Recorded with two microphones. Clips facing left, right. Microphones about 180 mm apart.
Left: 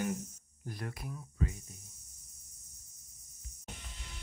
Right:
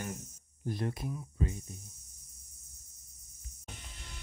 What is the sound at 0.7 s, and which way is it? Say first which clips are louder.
Speech: right 7 dB; 25° right (ahead or behind).